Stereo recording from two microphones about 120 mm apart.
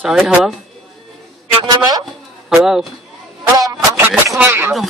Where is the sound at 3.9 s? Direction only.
15° right (ahead or behind).